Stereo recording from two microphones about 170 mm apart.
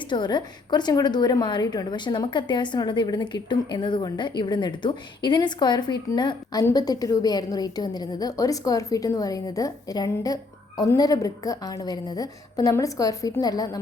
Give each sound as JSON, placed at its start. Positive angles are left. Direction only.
{"t": 0.1, "sound": "a woman's voice", "side_deg": 25}